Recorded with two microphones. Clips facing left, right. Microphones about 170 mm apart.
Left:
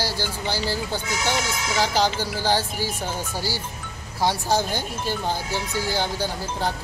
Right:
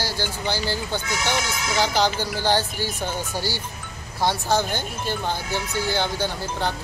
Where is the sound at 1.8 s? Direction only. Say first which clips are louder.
Even; 35° left (ahead or behind).